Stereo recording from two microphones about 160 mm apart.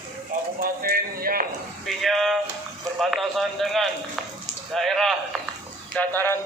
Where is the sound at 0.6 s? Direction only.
65° right (ahead or behind).